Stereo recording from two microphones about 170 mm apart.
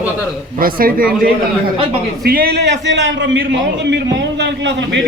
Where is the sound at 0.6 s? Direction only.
60° right (ahead or behind).